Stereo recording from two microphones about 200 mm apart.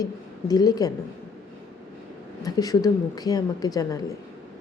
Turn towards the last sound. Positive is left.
turn(degrees=15)  # may be behind; listen again after turning